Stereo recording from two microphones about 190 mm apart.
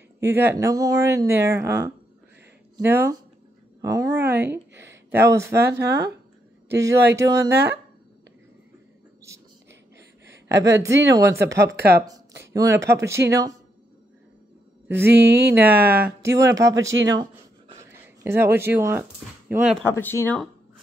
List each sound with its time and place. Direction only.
0.2 s speech: 10° right (ahead or behind)
5.8 s speech: 60° right (ahead or behind)
6.7 s speech: 15° right (ahead or behind)
7.5 s speech: 60° right (ahead or behind)
9.7 s a sound: 65° right (ahead or behind)
10.6 s speech: 15° right (ahead or behind)
11.5 s speech: 60° right (ahead or behind)
11.9 s speech: 15° right (ahead or behind)
14.9 s mantra: 10° right (ahead or behind)
15.2 s speech: 65° right (ahead or behind)
16.0 s speech: 15° right (ahead or behind)
17.1 s a sound: 20° right (ahead or behind)
19.9 s speech: 10° left (ahead or behind)